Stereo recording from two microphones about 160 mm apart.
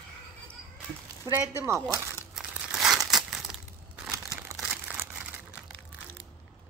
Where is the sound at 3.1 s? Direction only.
Centre (ahead or behind).